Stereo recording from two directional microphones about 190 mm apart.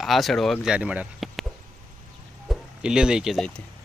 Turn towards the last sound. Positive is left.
turn(degrees=0)  # may be behind; listen again after turning